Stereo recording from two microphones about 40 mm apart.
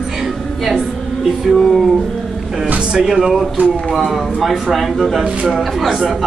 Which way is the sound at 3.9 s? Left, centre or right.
Centre.